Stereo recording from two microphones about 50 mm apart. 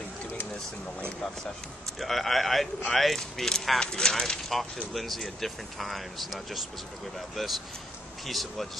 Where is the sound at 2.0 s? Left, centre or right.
Centre.